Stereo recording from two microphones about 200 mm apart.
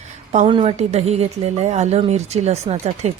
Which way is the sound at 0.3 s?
30° right (ahead or behind).